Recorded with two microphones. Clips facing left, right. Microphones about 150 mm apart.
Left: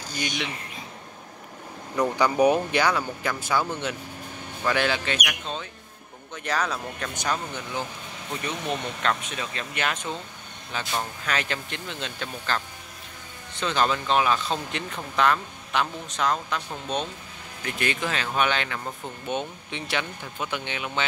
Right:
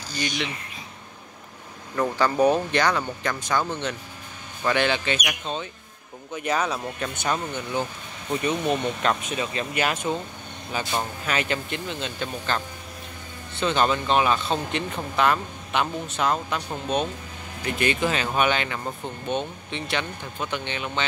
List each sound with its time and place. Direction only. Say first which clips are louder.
2.0 s speech: even; 15° left (ahead or behind); by 11.1 s 20° right (ahead or behind)
11.2 s speech: right 3 dB; 5° right (ahead or behind)
19.2 s speech: right 2 dB; 10° left (ahead or behind)